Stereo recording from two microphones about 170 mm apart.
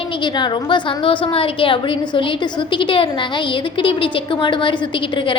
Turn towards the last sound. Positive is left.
turn(degrees=30)  # may be behind; listen again after turning